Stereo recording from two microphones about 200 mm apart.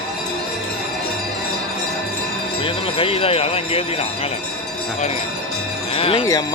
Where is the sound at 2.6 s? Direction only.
25° left (ahead or behind).